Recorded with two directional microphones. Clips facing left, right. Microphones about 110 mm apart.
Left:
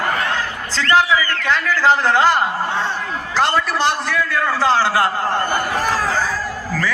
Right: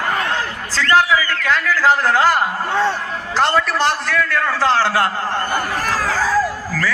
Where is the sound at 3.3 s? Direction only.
Centre (ahead or behind).